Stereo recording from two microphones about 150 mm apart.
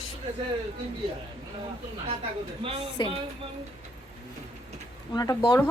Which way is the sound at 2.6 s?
35° right (ahead or behind).